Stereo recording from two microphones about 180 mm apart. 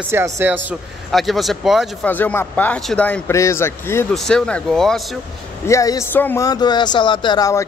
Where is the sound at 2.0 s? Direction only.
10° left (ahead or behind).